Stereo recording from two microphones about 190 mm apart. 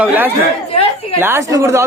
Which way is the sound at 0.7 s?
30° left (ahead or behind).